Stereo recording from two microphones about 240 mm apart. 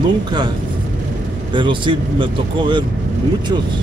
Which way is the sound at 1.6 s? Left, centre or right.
Centre.